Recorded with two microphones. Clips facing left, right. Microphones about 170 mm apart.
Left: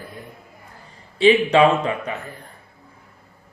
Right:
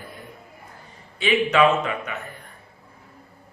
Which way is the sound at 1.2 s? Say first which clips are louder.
Left 5 dB; 30° left (ahead or behind).